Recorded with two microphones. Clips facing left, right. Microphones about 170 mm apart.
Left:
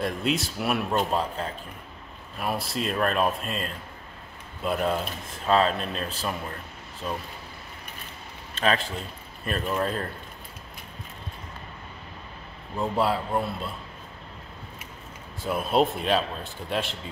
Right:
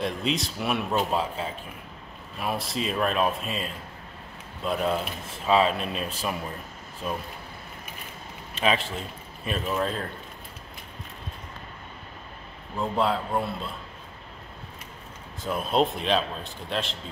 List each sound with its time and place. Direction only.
0.0 s speech: 5° left (ahead or behind)
8.5 s speech: 5° right (ahead or behind)
12.7 s speech: 5° left (ahead or behind)
15.4 s speech: 5° left (ahead or behind)